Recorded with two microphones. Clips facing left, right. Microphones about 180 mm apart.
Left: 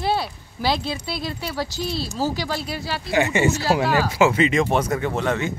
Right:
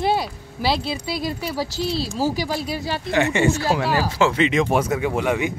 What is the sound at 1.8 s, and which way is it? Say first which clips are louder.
Speech: right 5 dB; 35° right (ahead or behind).